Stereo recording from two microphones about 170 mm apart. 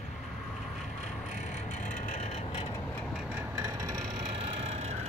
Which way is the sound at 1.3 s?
45° left (ahead or behind).